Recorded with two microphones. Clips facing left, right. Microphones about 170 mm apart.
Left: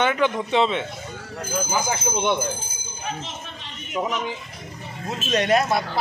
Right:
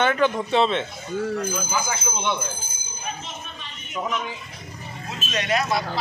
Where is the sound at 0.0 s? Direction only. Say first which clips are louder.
Right 1 dB; 15° left (ahead or behind).